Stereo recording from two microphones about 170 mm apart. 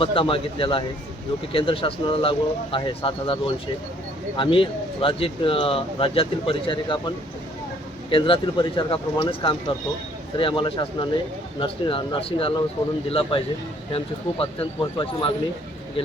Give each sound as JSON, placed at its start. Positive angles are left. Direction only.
{"t": 0.0, "sound": "speech", "side_deg": 30}
{"t": 8.1, "sound": "speech", "side_deg": 30}